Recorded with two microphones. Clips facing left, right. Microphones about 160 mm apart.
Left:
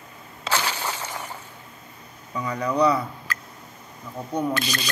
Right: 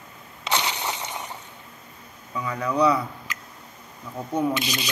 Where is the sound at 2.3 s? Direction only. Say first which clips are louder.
Left 1 dB; 5° right (ahead or behind).